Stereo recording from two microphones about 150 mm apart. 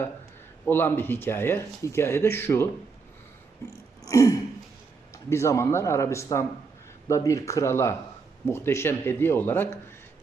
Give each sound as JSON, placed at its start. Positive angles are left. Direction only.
{"t": 0.6, "sound": "speech", "side_deg": 15}
{"t": 4.0, "sound": "throat clearing", "side_deg": 20}
{"t": 5.1, "sound": "speech", "side_deg": 20}